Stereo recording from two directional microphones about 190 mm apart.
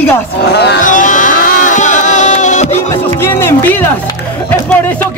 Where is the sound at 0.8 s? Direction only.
45° left (ahead or behind).